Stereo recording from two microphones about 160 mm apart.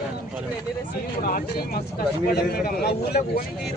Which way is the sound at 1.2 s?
70° left (ahead or behind).